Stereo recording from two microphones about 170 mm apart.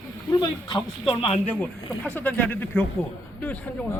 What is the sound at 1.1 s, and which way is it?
Speech, 30° left (ahead or behind).